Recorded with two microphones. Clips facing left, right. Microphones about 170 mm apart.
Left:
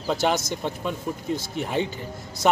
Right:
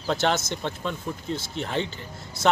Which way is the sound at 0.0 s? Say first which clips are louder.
Left 1 dB; 10° left (ahead or behind).